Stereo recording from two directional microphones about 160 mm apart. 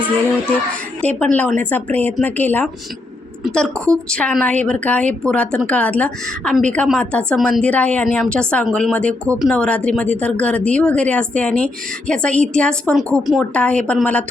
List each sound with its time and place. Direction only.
1.0 s speech: 10° left (ahead or behind)